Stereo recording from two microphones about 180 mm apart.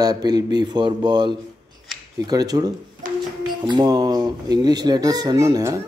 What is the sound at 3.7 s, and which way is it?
A child's voice, 25° right (ahead or behind).